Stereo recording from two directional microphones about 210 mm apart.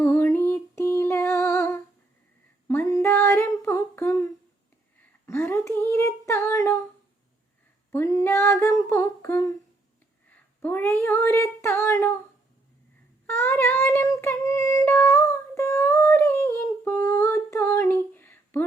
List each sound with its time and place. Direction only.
0.0 s a sound: 10° left (ahead or behind)
2.6 s humming: 15° left (ahead or behind)
5.2 s child singing: 10° left (ahead or behind)
7.9 s female singing: 10° left (ahead or behind)
10.2 s a sound: 10° left (ahead or behind)
13.2 s child singing: 10° left (ahead or behind)